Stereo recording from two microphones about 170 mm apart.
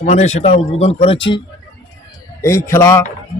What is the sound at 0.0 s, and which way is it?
A man's voice, 40° left (ahead or behind).